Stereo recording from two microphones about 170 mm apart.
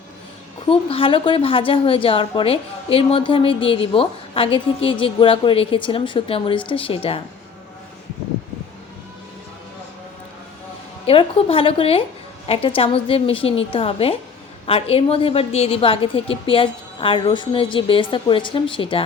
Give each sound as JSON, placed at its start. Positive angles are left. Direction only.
{"t": 0.7, "sound": "a woman's voice", "side_deg": 35}
{"t": 11.0, "sound": "a woman's voice", "side_deg": 35}